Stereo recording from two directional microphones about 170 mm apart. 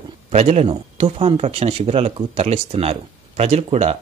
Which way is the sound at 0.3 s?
40° right (ahead or behind).